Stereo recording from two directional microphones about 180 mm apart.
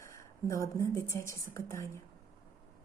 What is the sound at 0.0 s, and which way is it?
Speech, 15° left (ahead or behind).